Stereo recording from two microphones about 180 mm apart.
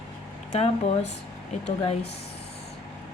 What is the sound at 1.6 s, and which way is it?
Speech, 35° left (ahead or behind).